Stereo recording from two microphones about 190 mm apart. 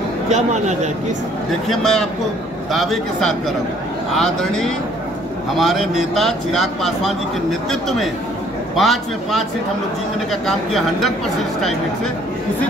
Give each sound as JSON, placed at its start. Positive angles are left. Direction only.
{"t": 0.3, "sound": "speech", "side_deg": -40}
{"t": 1.7, "sound": "speech", "side_deg": 0}
{"t": 8.7, "sound": "speech", "side_deg": 0}